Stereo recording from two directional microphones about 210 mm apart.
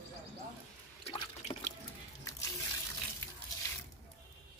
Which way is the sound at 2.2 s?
15° left (ahead or behind).